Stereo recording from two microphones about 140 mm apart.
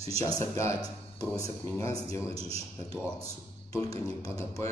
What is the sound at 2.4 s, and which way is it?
Speech, 45° right (ahead or behind).